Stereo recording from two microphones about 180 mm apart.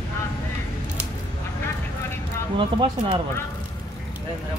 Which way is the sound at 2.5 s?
25° right (ahead or behind).